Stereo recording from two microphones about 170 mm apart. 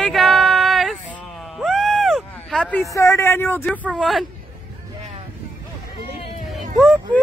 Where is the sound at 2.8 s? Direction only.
20° left (ahead or behind).